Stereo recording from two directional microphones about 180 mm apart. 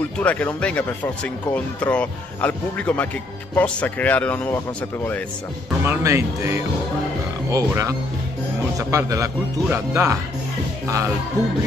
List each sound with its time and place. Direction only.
0.2 s speech: 10° left (ahead or behind)
5.9 s speech: 15° right (ahead or behind)